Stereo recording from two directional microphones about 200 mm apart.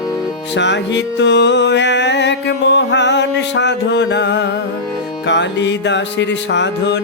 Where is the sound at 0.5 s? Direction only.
60° left (ahead or behind).